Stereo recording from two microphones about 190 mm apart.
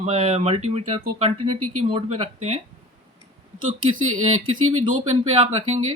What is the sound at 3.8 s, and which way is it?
Speech, 90° right.